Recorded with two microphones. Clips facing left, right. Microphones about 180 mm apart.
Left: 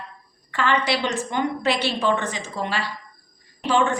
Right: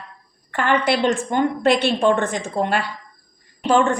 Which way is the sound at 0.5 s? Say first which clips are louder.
Right 3 dB; 55° right (ahead or behind).